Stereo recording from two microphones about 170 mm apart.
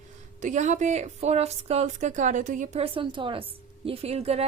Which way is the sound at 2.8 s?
30° right (ahead or behind).